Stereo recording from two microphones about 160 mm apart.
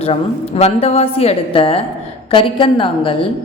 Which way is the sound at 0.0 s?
40° left (ahead or behind).